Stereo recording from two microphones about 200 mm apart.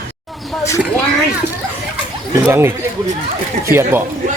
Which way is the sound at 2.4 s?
15° right (ahead or behind).